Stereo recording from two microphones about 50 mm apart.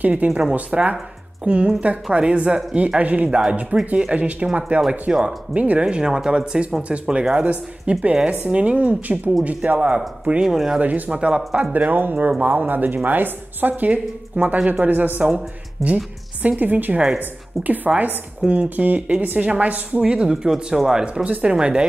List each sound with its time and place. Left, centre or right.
0.0 s a woman's voice: right
0.3 s speech: centre
10.4 s speech: centre
10.8 s speech: right
11.9 s a woman's voice: right
20.0 s speech: centre
21.0 s speech: right